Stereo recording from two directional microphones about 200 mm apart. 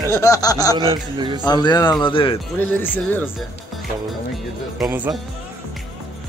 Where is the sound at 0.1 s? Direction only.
15° left (ahead or behind).